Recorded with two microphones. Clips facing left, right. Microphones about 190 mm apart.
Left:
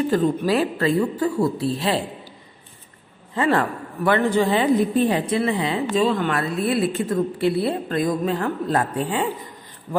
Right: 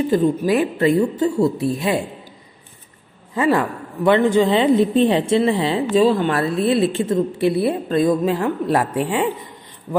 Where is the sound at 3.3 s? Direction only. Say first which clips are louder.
Right 2 dB; 15° right (ahead or behind).